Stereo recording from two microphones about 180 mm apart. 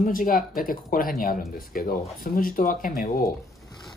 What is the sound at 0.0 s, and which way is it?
Speech, 50° left (ahead or behind).